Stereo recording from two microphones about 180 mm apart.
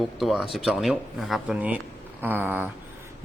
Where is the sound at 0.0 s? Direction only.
Centre (ahead or behind).